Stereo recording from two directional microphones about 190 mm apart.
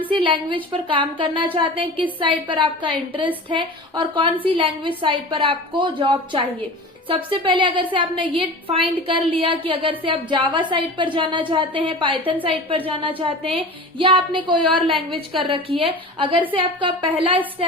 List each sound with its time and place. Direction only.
0.1 s a woman's voice: 25° right (ahead or behind)